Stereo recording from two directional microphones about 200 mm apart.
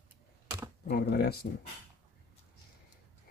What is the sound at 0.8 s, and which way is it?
Speech, 50° left (ahead or behind).